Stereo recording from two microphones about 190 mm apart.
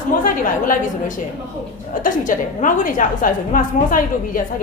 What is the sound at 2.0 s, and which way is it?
A woman's voice, 45° left (ahead or behind).